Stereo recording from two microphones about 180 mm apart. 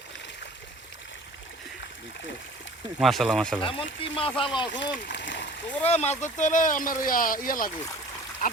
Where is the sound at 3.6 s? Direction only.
30° left (ahead or behind).